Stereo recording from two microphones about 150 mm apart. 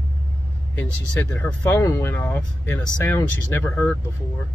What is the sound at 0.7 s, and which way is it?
Speech, 15° left (ahead or behind).